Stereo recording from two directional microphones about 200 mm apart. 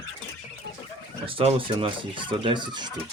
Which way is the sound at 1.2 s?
25° right (ahead or behind).